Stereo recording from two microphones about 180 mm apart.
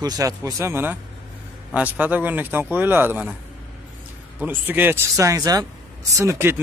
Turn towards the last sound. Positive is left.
turn(degrees=-15)  # may be behind; listen again after turning